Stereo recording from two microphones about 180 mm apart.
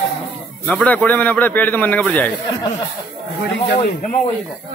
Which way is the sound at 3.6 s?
55° left (ahead or behind).